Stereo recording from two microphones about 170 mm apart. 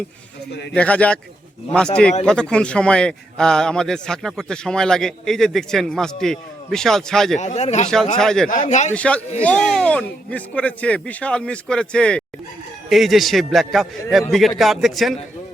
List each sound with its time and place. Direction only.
0.7 s a man's voice: 5° left (ahead or behind)
2.2 s a man's voice: 5° left (ahead or behind)
7.3 s a man's voice: 40° left (ahead or behind)
8.2 s a man's voice: 5° left (ahead or behind)
8.6 s a man's voice: 45° left (ahead or behind)
8.9 s a man's voice: 5° left (ahead or behind)